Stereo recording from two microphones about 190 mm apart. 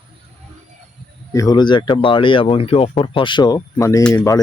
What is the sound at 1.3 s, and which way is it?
Speech, 20° left (ahead or behind).